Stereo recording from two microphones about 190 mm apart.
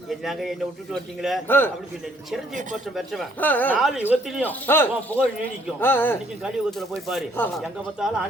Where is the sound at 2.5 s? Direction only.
40° right (ahead or behind).